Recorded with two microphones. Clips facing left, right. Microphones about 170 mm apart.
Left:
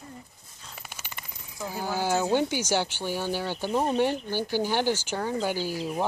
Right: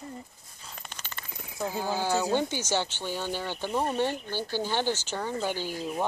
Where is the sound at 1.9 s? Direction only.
15° left (ahead or behind).